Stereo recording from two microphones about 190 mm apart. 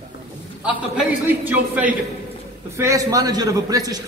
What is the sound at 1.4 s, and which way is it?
A man's voice, 10° right (ahead or behind).